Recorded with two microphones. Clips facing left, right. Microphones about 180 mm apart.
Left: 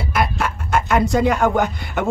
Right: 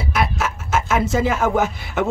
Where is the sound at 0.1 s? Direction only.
Centre (ahead or behind).